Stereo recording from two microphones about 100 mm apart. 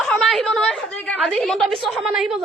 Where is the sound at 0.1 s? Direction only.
5° left (ahead or behind).